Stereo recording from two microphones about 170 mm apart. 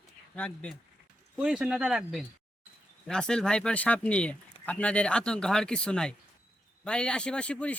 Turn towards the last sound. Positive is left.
turn(degrees=5)  # may be behind; listen again after turning